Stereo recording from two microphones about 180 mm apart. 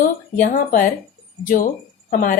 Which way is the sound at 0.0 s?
45° left (ahead or behind).